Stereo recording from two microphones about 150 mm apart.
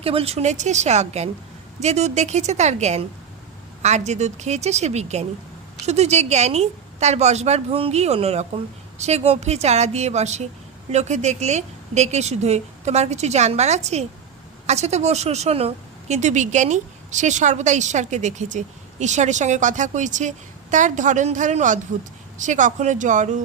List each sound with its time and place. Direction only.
0.0 s a woman's voice: 40° right (ahead or behind); by 23.4 s 55° right (ahead or behind)